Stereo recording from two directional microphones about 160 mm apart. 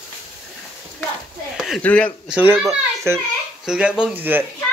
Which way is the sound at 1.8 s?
10° left (ahead or behind).